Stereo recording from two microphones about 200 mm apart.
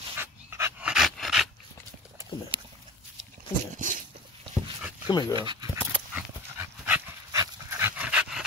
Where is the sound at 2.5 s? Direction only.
25° right (ahead or behind).